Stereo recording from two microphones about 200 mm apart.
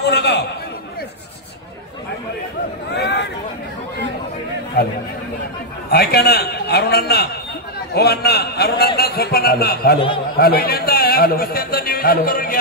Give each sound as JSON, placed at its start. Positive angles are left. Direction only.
{"t": 0.0, "sound": "a man's voice", "side_deg": 55}
{"t": 2.9, "sound": "a sound", "side_deg": 60}
{"t": 5.9, "sound": "a man's voice", "side_deg": 50}